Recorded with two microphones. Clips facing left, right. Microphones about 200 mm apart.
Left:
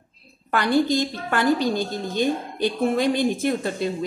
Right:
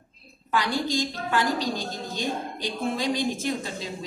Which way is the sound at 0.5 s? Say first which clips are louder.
Left 6 dB; 60° left (ahead or behind).